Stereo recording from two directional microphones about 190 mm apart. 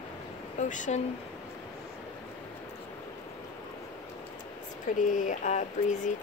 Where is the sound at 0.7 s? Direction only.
40° left (ahead or behind).